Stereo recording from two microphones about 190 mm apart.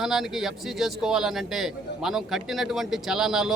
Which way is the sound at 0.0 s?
Centre (ahead or behind).